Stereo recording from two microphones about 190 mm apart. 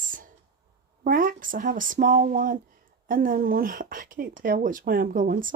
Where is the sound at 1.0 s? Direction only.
50° right (ahead or behind).